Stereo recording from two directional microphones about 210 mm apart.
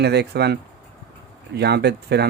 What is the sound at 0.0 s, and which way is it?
Speech, 50° right (ahead or behind).